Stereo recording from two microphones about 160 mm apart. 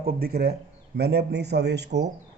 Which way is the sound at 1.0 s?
90° right.